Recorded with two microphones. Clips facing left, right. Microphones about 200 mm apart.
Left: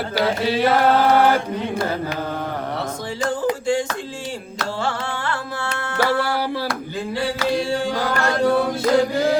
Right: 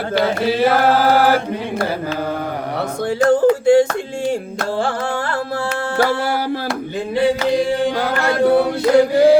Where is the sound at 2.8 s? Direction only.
65° right (ahead or behind).